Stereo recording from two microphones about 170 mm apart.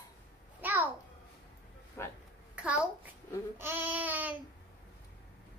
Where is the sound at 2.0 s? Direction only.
15° left (ahead or behind).